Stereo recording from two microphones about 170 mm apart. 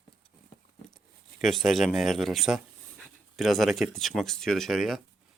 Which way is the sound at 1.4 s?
Centre (ahead or behind).